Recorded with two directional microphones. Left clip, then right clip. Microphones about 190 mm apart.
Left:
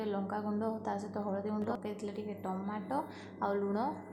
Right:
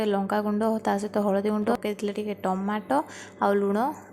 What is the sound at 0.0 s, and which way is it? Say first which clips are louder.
A woman's voice: right 11 dB; 35° right (ahead or behind).